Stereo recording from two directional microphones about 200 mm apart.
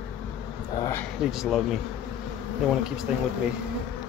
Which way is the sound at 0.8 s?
10° left (ahead or behind).